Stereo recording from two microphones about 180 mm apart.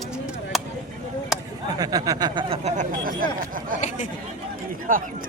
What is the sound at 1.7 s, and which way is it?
Speech, 20° right (ahead or behind).